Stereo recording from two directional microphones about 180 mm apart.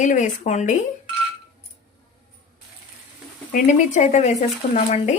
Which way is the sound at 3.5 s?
40° left (ahead or behind).